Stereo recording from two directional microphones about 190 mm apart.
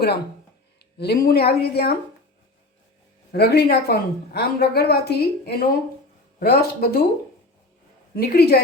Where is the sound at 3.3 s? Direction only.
55° left (ahead or behind).